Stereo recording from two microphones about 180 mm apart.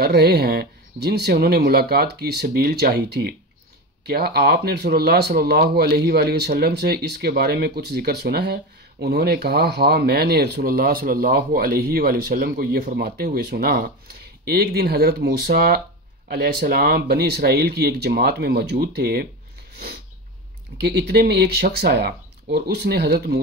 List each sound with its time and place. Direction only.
0.0 s speech: 60° right (ahead or behind)
20.7 s speech: 70° right (ahead or behind)